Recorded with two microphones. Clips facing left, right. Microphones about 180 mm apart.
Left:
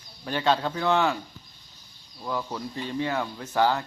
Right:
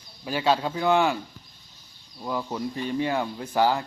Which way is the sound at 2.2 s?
15° right (ahead or behind).